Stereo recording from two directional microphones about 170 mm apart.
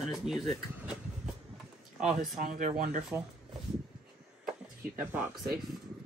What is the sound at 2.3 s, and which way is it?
Speech, 50° right (ahead or behind).